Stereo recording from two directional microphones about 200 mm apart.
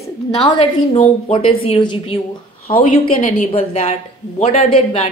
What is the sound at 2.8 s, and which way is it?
A woman's voice, 40° left (ahead or behind).